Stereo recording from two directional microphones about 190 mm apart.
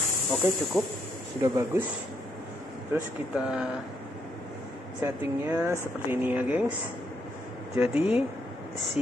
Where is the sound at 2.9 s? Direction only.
5° right (ahead or behind).